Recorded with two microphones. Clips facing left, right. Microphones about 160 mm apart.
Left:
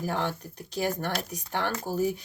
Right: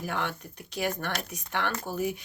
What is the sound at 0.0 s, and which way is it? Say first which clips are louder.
Speech: left 3 dB; 35° left (ahead or behind).